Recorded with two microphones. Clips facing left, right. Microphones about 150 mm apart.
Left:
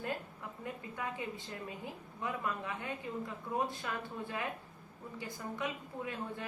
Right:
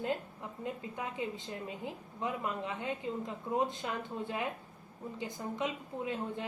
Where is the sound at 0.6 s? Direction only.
20° right (ahead or behind).